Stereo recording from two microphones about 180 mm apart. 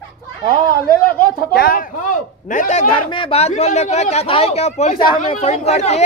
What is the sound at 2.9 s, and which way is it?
Speech, 30° left (ahead or behind).